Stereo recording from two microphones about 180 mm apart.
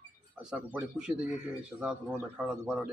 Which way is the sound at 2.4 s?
5° right (ahead or behind).